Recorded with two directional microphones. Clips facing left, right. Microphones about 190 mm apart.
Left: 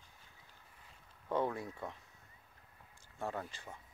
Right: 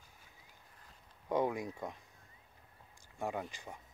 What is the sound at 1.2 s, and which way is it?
Speech, 15° right (ahead or behind).